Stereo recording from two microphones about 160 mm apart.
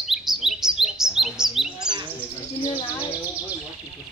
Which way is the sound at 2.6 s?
30° left (ahead or behind).